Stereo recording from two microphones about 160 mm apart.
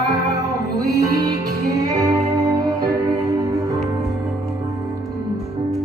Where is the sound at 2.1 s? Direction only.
25° right (ahead or behind).